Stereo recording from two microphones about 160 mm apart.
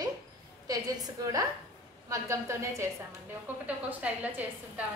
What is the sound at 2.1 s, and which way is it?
Speech, 20° right (ahead or behind).